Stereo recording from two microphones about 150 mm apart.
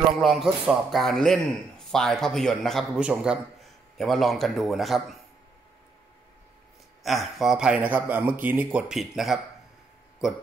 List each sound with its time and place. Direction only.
0.2 s a man's voice: centre (ahead or behind)
7.0 s a man's voice: centre (ahead or behind)